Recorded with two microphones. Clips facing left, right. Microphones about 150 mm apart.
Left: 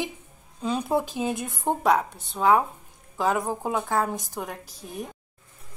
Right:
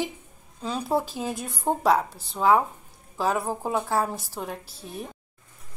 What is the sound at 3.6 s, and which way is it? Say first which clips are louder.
Speech: right 1 dB; 5° right (ahead or behind).